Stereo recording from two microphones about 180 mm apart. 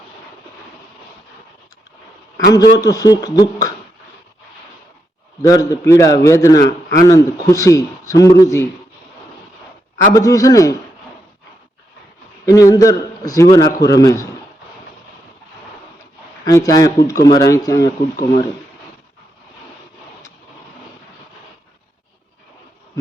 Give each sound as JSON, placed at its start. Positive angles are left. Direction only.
{"t": 2.5, "sound": "a man's voice", "side_deg": 20}
{"t": 5.4, "sound": "a man's voice", "side_deg": 20}
{"t": 10.2, "sound": "a man's voice", "side_deg": 20}
{"t": 12.5, "sound": "a man's voice", "side_deg": 20}
{"t": 16.5, "sound": "a man's voice", "side_deg": 20}